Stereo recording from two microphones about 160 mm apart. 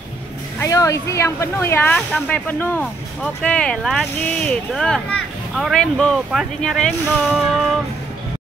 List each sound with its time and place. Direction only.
0.6 s speech: 20° left (ahead or behind); by 7.7 s centre (ahead or behind)